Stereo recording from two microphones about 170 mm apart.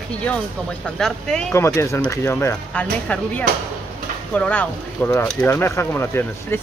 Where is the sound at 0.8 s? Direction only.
5° left (ahead or behind).